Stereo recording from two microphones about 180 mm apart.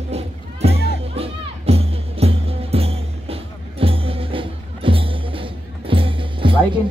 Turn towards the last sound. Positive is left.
turn(degrees=-30)  # may be behind; listen again after turning